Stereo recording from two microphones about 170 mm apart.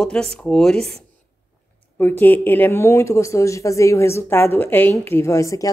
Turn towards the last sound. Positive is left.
turn(degrees=20)  # may be behind; listen again after turning